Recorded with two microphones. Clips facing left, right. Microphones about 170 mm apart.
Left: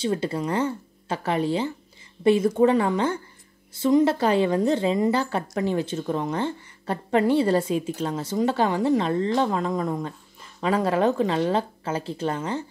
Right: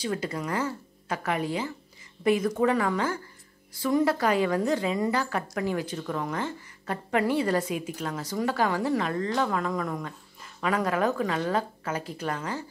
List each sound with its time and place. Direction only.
0.0 s a woman's voice: 30° left (ahead or behind)